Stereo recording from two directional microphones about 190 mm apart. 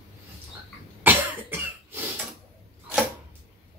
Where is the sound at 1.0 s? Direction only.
10° right (ahead or behind).